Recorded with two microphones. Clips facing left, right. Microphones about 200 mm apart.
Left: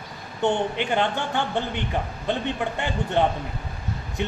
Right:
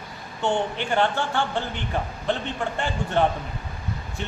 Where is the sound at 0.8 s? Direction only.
15° left (ahead or behind).